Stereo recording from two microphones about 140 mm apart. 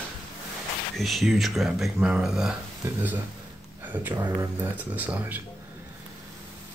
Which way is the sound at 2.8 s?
15° right (ahead or behind).